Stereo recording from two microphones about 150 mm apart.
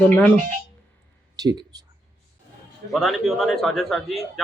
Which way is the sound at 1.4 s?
25° right (ahead or behind).